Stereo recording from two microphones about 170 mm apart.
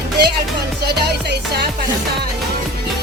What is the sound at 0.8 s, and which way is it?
Music, 70° right (ahead or behind).